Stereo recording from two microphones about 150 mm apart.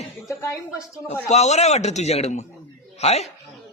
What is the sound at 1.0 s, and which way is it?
A man's voice, 45° left (ahead or behind).